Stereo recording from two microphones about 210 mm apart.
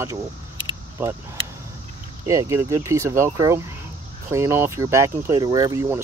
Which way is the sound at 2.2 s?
15° right (ahead or behind).